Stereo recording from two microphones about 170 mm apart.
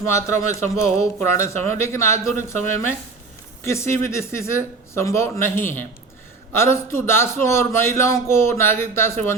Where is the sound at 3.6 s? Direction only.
15° left (ahead or behind).